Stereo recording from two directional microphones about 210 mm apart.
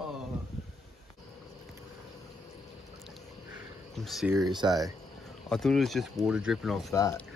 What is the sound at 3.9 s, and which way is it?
Speech, centre (ahead or behind).